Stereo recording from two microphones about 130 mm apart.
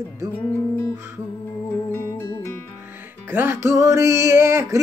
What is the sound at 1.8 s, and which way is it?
Music, 20° left (ahead or behind).